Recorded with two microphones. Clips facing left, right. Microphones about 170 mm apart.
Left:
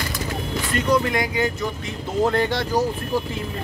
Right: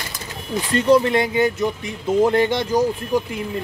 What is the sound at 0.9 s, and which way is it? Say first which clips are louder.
Speech: right 6 dB; 25° right (ahead or behind).